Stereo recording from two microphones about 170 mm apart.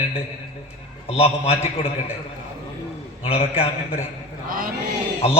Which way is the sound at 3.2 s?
35° left (ahead or behind).